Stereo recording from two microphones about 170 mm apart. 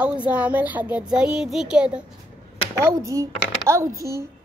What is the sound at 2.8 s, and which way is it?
A woman's voice, 20° right (ahead or behind).